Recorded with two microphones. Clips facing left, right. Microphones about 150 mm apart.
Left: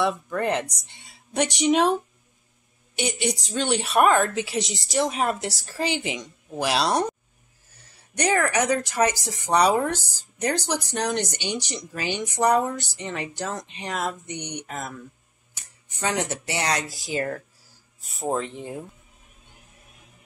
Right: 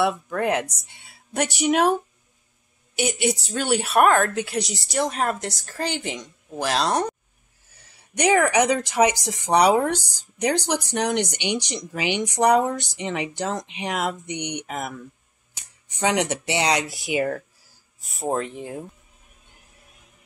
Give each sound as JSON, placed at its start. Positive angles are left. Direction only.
{"t": 0.0, "sound": "speech", "side_deg": -10}
{"t": 3.0, "sound": "speech", "side_deg": -5}
{"t": 8.2, "sound": "speech", "side_deg": -15}
{"t": 16.8, "sound": "speech", "side_deg": -70}
{"t": 17.1, "sound": "speech", "side_deg": -10}